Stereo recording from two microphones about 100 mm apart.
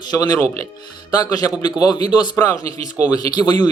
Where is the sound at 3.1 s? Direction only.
45° left (ahead or behind).